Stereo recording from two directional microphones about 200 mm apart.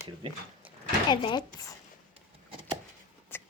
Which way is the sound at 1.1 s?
20° left (ahead or behind).